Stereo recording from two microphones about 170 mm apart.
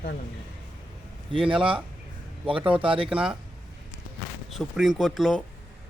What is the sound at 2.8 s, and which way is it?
Speech, 30° right (ahead or behind).